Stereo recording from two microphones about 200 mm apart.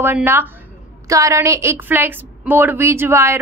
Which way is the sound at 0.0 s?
10° right (ahead or behind).